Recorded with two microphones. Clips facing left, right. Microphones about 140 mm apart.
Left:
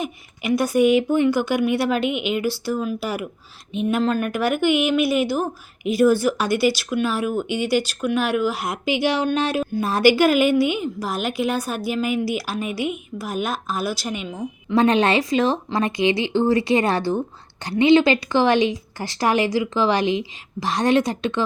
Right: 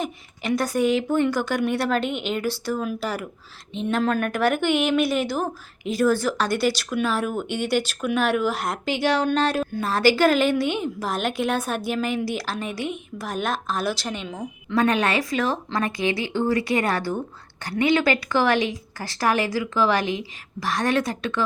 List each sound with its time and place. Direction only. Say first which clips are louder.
0.0 s speech: left 1 dB; 10° left (ahead or behind)
14.8 s speech: left 4 dB; 25° left (ahead or behind)